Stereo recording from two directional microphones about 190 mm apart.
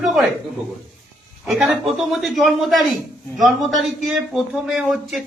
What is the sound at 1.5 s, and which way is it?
A man's voice, centre (ahead or behind).